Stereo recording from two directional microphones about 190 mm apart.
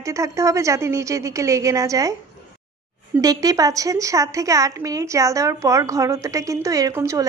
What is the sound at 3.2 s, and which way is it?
A woman's voice, 20° right (ahead or behind).